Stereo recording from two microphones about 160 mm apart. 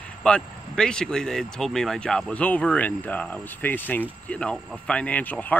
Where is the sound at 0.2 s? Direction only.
5° left (ahead or behind).